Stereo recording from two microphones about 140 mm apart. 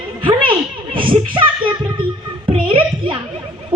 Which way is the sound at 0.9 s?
40° right (ahead or behind).